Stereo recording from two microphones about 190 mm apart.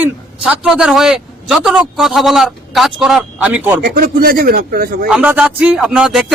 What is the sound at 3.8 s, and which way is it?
Speech, 55° right (ahead or behind).